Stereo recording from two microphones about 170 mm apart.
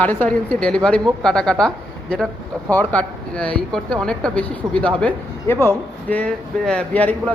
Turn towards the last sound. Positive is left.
turn(degrees=10)  # may be behind; listen again after turning